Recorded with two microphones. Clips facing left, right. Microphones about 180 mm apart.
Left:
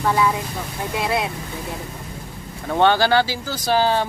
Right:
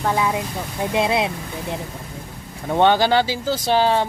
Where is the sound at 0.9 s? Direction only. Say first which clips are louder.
Right 3 dB; 20° right (ahead or behind).